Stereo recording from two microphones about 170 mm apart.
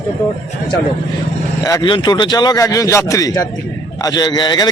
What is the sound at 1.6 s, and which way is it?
A man's voice, 25° left (ahead or behind).